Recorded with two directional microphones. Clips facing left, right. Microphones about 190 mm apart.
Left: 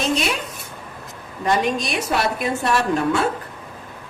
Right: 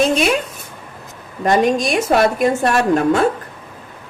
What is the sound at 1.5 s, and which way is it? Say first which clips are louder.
A woman's voice: right 6 dB; 50° right (ahead or behind).